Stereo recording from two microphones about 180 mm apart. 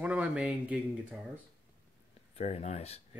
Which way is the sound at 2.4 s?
35° left (ahead or behind).